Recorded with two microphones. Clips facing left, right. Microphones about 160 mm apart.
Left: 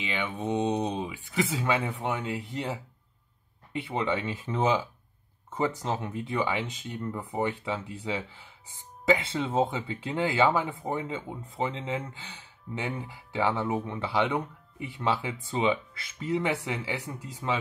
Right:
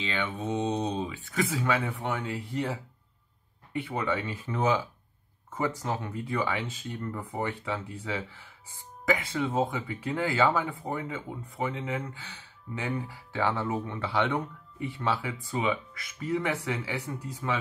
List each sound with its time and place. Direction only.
0.0 s speech: 15° left (ahead or behind)
3.8 s speech: 20° left (ahead or behind)